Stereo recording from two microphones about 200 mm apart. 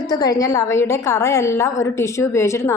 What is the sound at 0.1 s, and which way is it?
A woman's voice, 20° left (ahead or behind).